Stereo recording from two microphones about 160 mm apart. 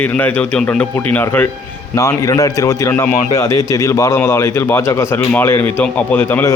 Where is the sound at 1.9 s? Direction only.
20° left (ahead or behind).